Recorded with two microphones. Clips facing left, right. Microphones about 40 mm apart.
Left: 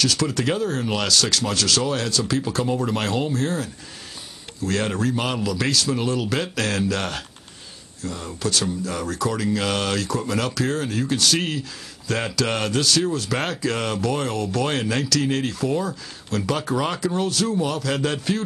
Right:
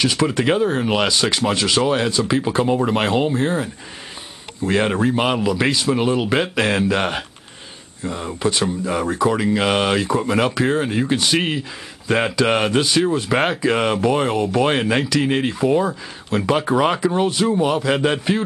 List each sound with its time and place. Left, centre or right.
0.0 s speech: right